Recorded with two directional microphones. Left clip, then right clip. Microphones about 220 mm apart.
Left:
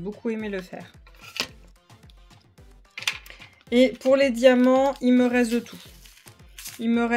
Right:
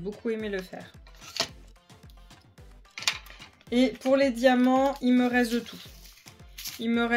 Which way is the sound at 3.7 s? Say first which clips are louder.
Left 5 dB; 35° left (ahead or behind).